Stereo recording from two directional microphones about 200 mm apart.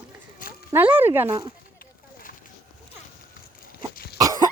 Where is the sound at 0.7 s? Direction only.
10° right (ahead or behind).